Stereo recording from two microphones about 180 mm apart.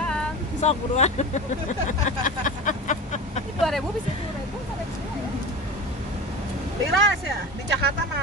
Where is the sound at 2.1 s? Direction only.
45° left (ahead or behind).